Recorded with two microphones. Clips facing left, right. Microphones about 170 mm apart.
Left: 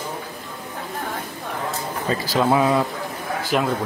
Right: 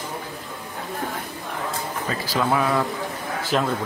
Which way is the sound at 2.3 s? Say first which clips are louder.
Left 3 dB; 20° left (ahead or behind).